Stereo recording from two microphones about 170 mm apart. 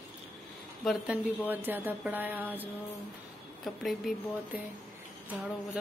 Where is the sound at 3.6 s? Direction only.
Centre (ahead or behind).